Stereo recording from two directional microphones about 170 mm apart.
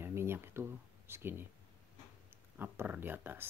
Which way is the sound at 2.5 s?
10° right (ahead or behind).